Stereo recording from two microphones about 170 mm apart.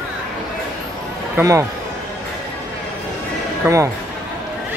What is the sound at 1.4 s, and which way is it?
Speech, 15° right (ahead or behind).